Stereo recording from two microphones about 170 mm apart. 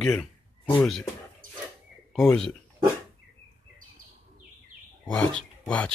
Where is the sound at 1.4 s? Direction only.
55° right (ahead or behind).